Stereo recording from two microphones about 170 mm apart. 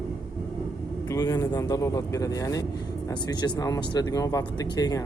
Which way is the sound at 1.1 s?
20° left (ahead or behind).